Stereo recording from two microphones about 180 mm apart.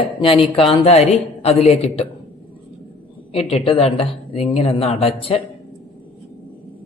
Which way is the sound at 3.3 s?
35° left (ahead or behind).